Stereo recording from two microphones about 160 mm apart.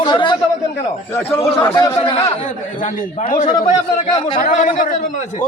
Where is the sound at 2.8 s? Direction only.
55° left (ahead or behind).